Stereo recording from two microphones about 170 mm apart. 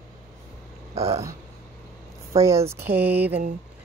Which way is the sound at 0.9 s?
35° right (ahead or behind).